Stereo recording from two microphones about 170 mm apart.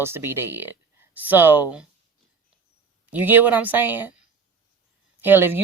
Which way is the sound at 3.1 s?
10° right (ahead or behind).